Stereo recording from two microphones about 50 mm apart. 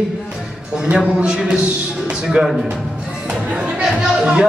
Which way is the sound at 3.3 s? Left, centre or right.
Right.